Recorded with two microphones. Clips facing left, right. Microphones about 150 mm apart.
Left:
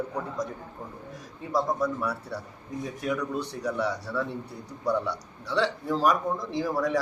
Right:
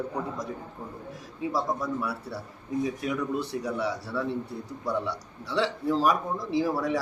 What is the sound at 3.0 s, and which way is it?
A man's voice, 5° right (ahead or behind).